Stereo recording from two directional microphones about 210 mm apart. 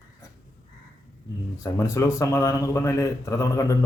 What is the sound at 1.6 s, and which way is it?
A man's voice, 15° left (ahead or behind).